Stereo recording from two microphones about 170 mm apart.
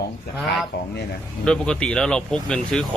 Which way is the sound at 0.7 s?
70° left (ahead or behind).